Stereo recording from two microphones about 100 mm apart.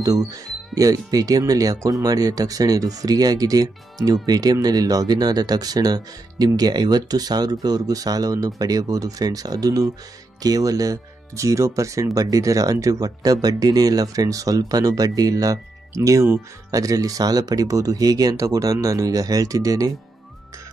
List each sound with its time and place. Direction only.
0.0 s speech: 35° right (ahead or behind)